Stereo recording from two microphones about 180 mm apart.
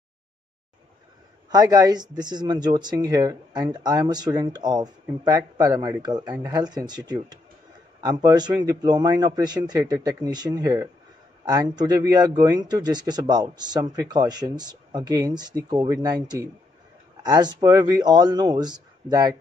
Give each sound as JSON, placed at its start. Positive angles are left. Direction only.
{"t": 1.5, "sound": "speech", "side_deg": -20}